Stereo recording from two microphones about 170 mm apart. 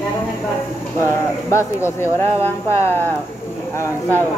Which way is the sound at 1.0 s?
15° left (ahead or behind).